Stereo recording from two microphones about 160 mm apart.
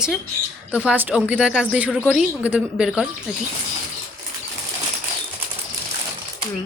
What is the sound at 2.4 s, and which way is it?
Speech, 10° right (ahead or behind).